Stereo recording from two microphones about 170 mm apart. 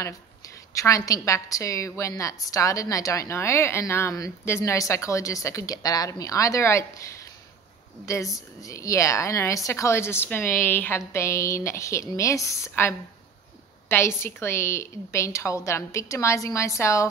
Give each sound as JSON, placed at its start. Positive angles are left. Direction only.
{"t": 0.7, "sound": "a woman's voice", "side_deg": 20}
{"t": 8.0, "sound": "a woman's voice", "side_deg": 20}